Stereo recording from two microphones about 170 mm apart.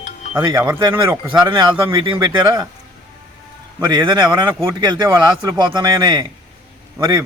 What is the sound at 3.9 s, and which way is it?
Speech, 25° right (ahead or behind).